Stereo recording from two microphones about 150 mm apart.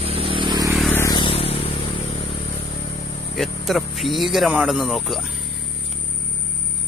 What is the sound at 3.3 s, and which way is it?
Speech, centre (ahead or behind).